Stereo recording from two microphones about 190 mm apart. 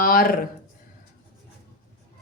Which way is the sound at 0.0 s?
50° left (ahead or behind).